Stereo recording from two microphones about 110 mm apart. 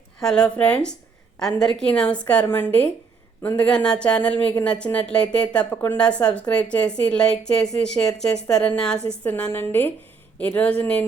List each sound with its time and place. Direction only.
0.2 s a woman's voice: 5° left (ahead or behind)